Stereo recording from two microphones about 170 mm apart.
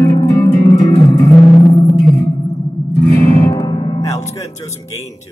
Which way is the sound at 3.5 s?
25° left (ahead or behind).